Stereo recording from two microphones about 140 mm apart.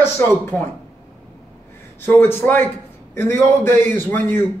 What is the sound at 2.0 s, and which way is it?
A man's voice, 15° left (ahead or behind).